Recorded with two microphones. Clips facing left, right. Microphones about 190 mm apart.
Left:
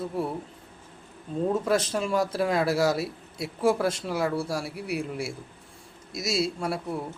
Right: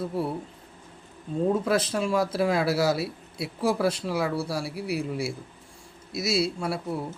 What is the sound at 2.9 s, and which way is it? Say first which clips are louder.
Speech: right 1 dB; 45° left (ahead or behind).